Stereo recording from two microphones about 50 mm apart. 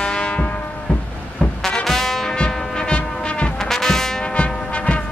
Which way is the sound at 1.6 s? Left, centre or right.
Centre.